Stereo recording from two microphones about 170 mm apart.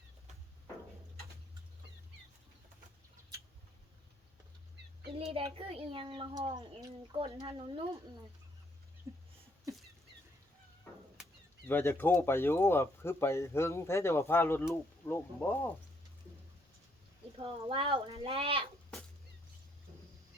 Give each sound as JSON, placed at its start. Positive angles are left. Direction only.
{"t": 5.1, "sound": "a child's voice", "side_deg": -35}
{"t": 9.1, "sound": "a sound", "side_deg": -20}
{"t": 11.7, "sound": "speech", "side_deg": 15}
{"t": 17.3, "sound": "a child's voice", "side_deg": -30}